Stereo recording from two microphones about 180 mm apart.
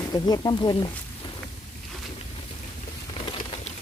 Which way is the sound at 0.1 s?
20° left (ahead or behind).